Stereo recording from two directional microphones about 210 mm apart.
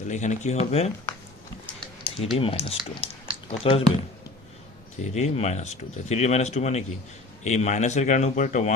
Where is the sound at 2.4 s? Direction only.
25° left (ahead or behind).